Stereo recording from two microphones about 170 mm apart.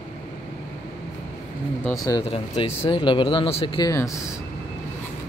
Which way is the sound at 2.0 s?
25° left (ahead or behind).